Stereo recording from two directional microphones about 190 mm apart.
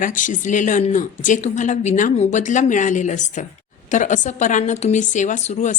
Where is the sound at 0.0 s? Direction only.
45° left (ahead or behind).